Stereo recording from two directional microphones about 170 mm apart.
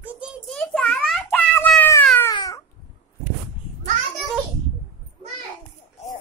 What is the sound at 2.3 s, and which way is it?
Cat, 25° left (ahead or behind).